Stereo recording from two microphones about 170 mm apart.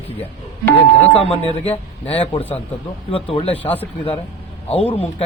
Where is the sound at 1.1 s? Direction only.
35° left (ahead or behind).